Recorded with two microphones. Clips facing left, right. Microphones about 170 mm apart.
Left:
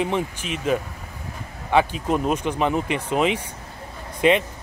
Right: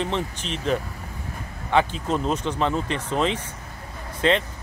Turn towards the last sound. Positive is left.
turn(degrees=15)  # may be behind; listen again after turning